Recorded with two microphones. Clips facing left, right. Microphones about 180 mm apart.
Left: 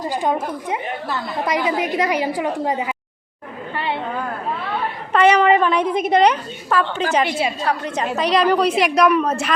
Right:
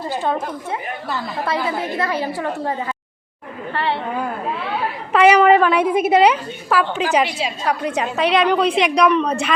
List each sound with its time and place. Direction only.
0.0 s a woman's voice: 15° left (ahead or behind)
3.8 s a sound: 15° left (ahead or behind)
4.7 s a woman's voice: 5° right (ahead or behind)
7.3 s a woman's voice: 55° left (ahead or behind)
7.7 s a woman's voice: 10° right (ahead or behind)